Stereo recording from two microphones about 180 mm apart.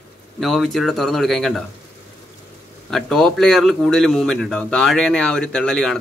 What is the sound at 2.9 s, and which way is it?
A man's voice, 5° left (ahead or behind).